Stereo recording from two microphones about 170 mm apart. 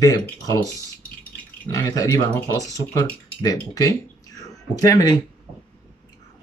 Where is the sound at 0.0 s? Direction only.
20° left (ahead or behind).